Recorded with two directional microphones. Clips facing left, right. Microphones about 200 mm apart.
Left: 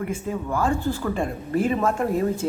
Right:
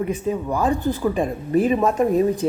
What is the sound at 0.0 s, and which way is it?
Speech, 20° right (ahead or behind).